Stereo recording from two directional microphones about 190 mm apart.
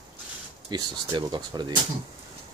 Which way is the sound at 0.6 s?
25° right (ahead or behind).